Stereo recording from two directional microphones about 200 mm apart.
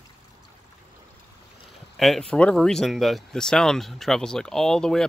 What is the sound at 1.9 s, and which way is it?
Speech, centre (ahead or behind).